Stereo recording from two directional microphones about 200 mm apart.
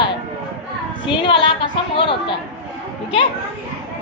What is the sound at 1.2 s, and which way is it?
A woman's voice, 25° left (ahead or behind).